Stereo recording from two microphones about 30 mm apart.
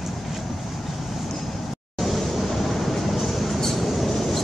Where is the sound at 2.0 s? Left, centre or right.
Centre.